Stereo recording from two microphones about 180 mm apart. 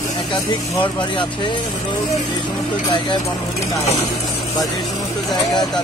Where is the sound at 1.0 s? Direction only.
25° left (ahead or behind).